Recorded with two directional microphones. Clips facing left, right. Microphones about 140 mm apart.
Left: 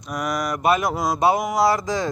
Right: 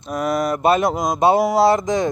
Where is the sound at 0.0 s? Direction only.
25° right (ahead or behind).